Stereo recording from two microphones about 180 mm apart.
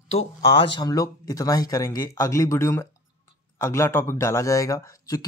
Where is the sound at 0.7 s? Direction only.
20° left (ahead or behind).